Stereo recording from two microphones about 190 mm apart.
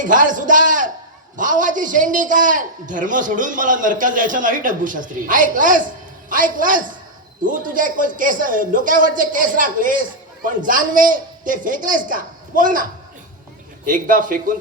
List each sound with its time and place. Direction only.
0.0 s a man's voice: 45° right (ahead or behind)